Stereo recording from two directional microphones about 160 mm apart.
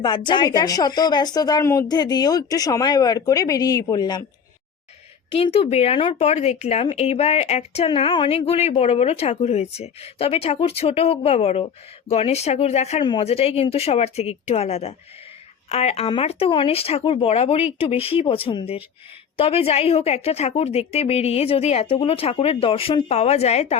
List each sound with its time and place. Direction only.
0.0 s speech: 30° left (ahead or behind)
5.3 s speech: 35° left (ahead or behind)